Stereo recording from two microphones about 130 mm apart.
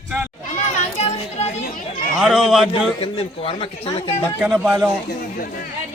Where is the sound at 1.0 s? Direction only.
55° left (ahead or behind).